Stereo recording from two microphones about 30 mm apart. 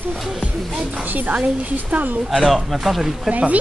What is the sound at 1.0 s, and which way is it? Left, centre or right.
Dog, right.